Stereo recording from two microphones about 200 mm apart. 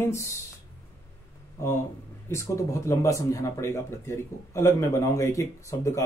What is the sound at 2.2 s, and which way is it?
Speech, 15° left (ahead or behind).